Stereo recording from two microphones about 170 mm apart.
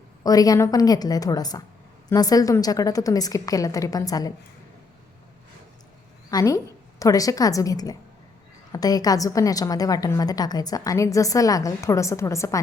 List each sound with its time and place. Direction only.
0.2 s a woman's voice: 20° left (ahead or behind)
6.3 s a woman's voice: 20° left (ahead or behind)